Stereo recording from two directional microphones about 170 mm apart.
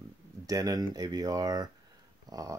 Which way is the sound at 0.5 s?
20° right (ahead or behind).